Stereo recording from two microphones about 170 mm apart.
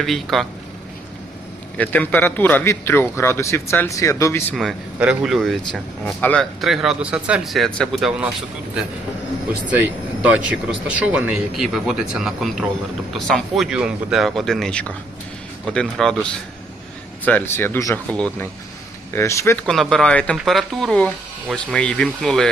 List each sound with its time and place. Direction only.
0.0 s speech: centre (ahead or behind)
1.8 s a man's voice: 10° left (ahead or behind)
4.5 s speech: 5° right (ahead or behind)
9.6 s a man's voice: 10° right (ahead or behind); by 19.6 s 15° left (ahead or behind)
19.6 s speech: centre (ahead or behind)